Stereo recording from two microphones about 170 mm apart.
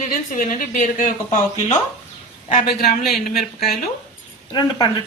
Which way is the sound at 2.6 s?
65° left (ahead or behind).